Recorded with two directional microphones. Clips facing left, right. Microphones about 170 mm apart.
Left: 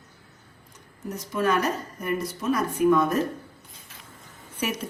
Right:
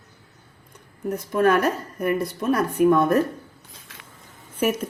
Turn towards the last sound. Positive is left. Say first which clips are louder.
# right 7 dB
turn(degrees=-50)  # may be behind; listen again after turning